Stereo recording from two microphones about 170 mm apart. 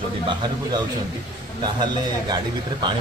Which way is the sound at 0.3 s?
25° right (ahead or behind).